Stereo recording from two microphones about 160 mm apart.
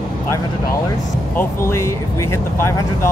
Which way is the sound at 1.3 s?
15° left (ahead or behind).